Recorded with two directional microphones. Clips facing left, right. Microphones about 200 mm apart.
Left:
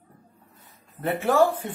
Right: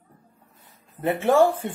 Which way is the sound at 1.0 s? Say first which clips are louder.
Right 3 dB; 25° right (ahead or behind).